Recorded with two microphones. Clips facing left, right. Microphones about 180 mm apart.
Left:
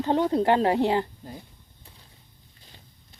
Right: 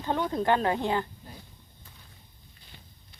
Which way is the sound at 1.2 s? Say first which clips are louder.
Left 7 dB; 40° left (ahead or behind).